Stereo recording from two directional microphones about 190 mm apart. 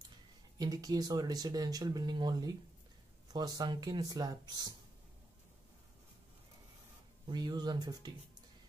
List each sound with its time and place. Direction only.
0.6 s speech: 20° right (ahead or behind)
7.2 s speech: 20° right (ahead or behind)